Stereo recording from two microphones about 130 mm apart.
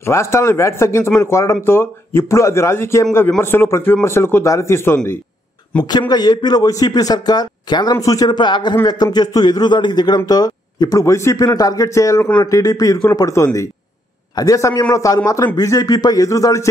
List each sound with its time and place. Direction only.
0.0 s a man's voice: 20° left (ahead or behind)
5.9 s a man's voice: 30° left (ahead or behind)